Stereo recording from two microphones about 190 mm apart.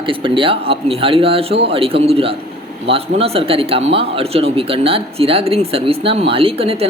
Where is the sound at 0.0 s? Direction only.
25° right (ahead or behind).